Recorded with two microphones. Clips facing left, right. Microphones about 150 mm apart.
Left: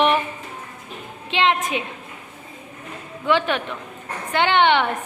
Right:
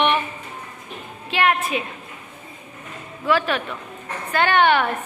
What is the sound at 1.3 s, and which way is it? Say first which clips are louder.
Speech: even; 20° left (ahead or behind).